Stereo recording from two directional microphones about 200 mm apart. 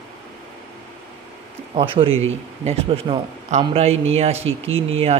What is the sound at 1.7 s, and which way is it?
Speech, 25° right (ahead or behind).